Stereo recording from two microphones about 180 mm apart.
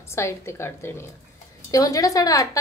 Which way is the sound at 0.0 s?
15° left (ahead or behind).